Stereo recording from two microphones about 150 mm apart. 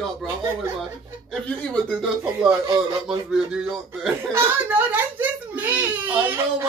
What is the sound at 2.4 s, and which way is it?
Speech, 20° right (ahead or behind).